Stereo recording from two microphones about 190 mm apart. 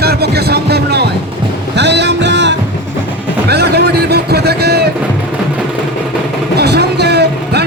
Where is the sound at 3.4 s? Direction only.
60° right (ahead or behind).